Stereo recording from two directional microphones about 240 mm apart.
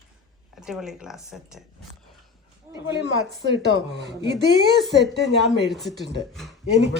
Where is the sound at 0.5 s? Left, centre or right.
Centre.